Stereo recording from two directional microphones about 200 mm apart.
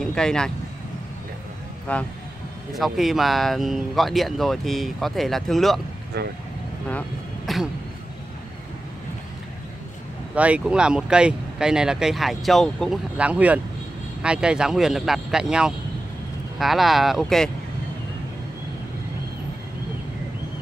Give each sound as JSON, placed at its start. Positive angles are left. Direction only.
{"t": 0.0, "sound": "speech", "side_deg": 5}
{"t": 1.9, "sound": "speech", "side_deg": 5}
{"t": 6.2, "sound": "speech", "side_deg": -55}
{"t": 6.9, "sound": "vehicle", "side_deg": 5}
{"t": 10.3, "sound": "speech", "side_deg": -5}